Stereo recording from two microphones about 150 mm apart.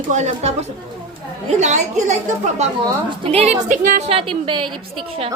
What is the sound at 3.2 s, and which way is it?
A woman's voice, 45° right (ahead or behind).